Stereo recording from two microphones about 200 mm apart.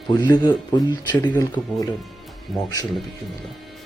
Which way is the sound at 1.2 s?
20° left (ahead or behind).